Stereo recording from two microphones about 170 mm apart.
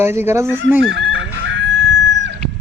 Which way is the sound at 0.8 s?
90° right.